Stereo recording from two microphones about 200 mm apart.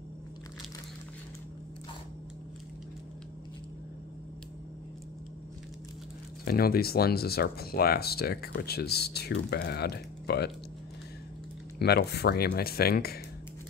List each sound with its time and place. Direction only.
6.4 s speech: 50° left (ahead or behind)
11.8 s speech: 55° left (ahead or behind)